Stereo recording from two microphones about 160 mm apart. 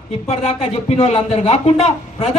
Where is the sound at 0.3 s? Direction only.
40° left (ahead or behind).